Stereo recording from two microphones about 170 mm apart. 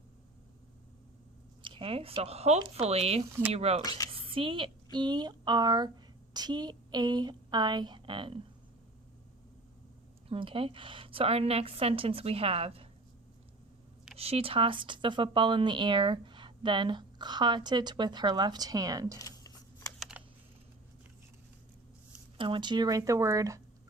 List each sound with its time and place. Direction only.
1.6 s a woman's voice: 30° right (ahead or behind)
3.8 s speech: 20° left (ahead or behind)
4.1 s speech: 30° right (ahead or behind)
10.2 s a woman's voice: 35° right (ahead or behind)
14.2 s speech: 35° right (ahead or behind); by 19.2 s 20° right (ahead or behind)
19.2 s a sound: 20° left (ahead or behind)
20.0 s computer keyboard: 5° right (ahead or behind)
22.4 s speech: 30° right (ahead or behind)